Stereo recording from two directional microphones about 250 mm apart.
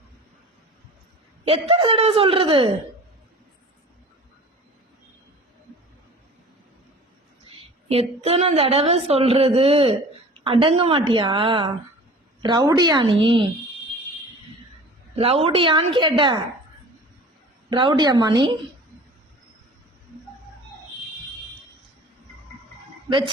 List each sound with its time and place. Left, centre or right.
1.5 s a woman's voice: right
7.9 s a woman's voice: right
15.1 s a woman's voice: right
17.7 s a woman's voice: centre
23.0 s speech: centre